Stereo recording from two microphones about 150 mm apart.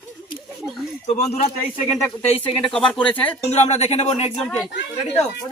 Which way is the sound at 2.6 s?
5° left (ahead or behind).